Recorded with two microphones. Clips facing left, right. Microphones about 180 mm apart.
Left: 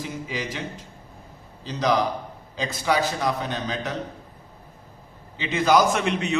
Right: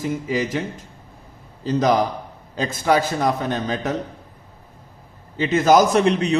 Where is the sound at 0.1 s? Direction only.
45° right (ahead or behind).